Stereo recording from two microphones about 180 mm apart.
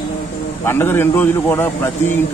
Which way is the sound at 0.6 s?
10° left (ahead or behind).